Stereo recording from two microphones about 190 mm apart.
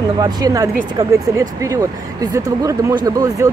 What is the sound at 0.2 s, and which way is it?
Speech, 20° right (ahead or behind).